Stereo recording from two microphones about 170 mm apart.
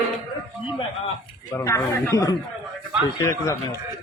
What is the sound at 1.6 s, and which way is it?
Speech, 15° left (ahead or behind).